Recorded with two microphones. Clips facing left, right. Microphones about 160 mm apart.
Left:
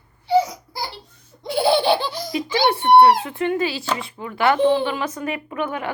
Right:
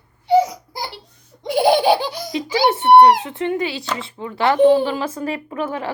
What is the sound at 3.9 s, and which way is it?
Speech, 25° right (ahead or behind).